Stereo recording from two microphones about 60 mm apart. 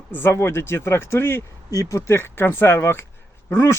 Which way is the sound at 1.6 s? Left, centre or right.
Left.